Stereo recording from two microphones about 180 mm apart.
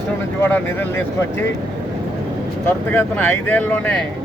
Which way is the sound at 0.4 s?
10° left (ahead or behind).